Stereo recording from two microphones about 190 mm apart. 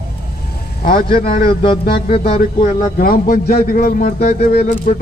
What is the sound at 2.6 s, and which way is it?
Speech, 50° left (ahead or behind).